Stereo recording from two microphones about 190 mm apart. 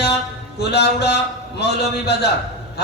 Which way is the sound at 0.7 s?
60° left (ahead or behind).